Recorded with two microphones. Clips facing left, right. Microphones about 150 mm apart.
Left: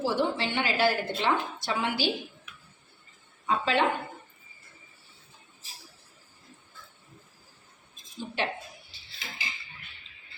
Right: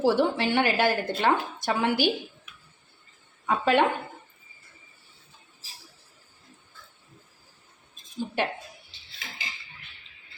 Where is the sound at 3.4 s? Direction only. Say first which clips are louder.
Right 4 dB; 55° right (ahead or behind).